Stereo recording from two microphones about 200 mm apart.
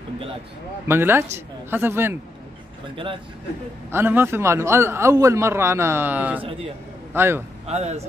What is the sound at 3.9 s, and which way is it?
A man's voice, 10° right (ahead or behind).